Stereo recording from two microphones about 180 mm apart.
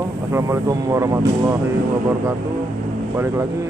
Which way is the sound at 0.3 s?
15° right (ahead or behind).